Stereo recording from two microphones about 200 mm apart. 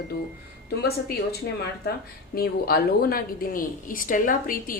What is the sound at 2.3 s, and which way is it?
A woman's voice, 50° left (ahead or behind).